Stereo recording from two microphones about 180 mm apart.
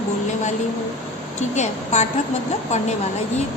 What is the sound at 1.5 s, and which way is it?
Speech, 40° left (ahead or behind).